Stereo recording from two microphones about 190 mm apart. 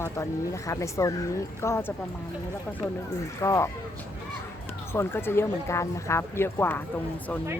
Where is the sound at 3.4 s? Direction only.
15° left (ahead or behind).